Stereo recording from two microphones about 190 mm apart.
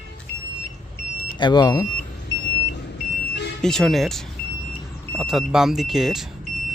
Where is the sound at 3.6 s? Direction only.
Centre (ahead or behind).